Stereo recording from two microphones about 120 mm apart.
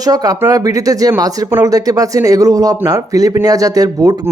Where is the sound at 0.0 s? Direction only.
30° right (ahead or behind).